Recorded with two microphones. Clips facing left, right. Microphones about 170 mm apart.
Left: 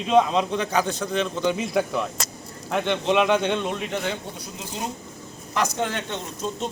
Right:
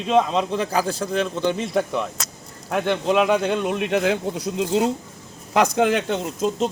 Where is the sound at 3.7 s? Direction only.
80° right.